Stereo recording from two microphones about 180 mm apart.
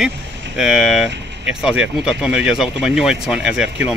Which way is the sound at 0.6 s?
Centre (ahead or behind).